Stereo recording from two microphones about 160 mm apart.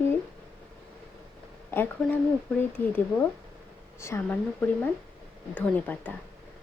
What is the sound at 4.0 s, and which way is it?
Speech, 15° left (ahead or behind).